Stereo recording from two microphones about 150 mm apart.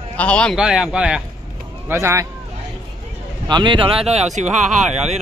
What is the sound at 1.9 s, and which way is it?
Speech, 20° right (ahead or behind).